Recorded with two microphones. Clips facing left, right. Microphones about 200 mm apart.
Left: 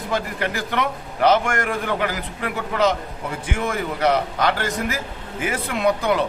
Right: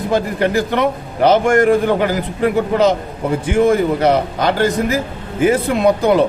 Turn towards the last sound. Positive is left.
turn(degrees=-30)  # may be behind; listen again after turning